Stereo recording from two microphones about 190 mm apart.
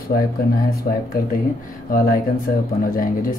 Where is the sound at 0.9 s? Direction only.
40° left (ahead or behind).